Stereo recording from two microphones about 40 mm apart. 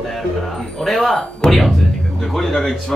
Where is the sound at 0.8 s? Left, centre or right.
Centre.